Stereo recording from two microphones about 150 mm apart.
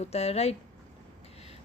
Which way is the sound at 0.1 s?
45° left (ahead or behind).